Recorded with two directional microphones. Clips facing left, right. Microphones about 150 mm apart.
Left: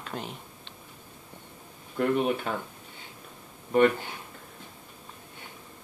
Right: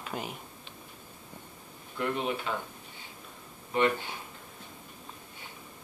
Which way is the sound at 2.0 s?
50° left (ahead or behind).